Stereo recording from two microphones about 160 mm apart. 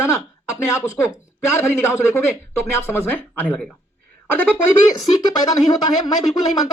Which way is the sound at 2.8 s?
15° left (ahead or behind).